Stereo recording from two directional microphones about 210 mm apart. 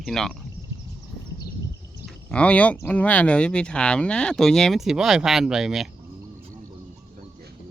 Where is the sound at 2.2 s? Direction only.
5° left (ahead or behind).